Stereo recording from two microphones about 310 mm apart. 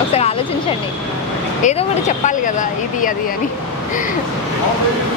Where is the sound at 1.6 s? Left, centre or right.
Left.